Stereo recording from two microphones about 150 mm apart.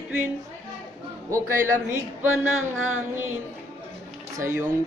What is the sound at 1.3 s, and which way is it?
A woman's voice, 20° right (ahead or behind).